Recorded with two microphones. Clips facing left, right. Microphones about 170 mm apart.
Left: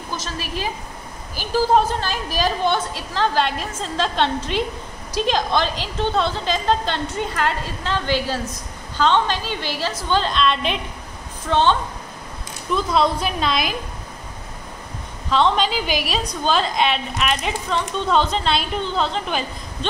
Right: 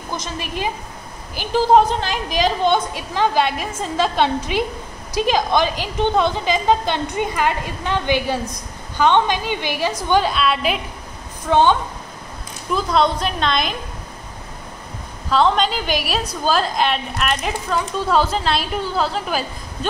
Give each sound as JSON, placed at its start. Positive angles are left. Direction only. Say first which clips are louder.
{"t": 0.1, "sound": "a woman's voice", "louder": "right 2 dB", "side_deg": -15}
{"t": 12.7, "sound": "a woman's voice", "louder": "right 1 dB", "side_deg": 0}
{"t": 15.2, "sound": "a woman's voice", "louder": "right 2 dB", "side_deg": 0}